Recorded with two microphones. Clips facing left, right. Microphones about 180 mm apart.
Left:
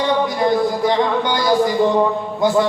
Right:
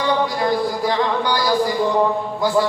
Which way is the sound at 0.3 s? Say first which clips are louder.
Left 3 dB; 20° left (ahead or behind).